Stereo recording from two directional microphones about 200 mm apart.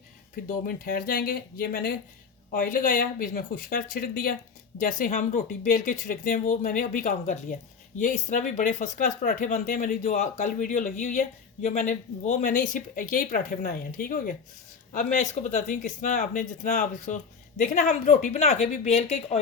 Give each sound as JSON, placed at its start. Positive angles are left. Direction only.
{"t": 0.4, "sound": "speech", "side_deg": 45}